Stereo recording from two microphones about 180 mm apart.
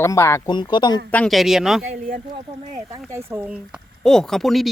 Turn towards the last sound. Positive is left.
turn(degrees=0)  # may be behind; listen again after turning